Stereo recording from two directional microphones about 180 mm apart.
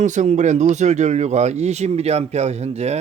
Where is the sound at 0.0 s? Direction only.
40° right (ahead or behind).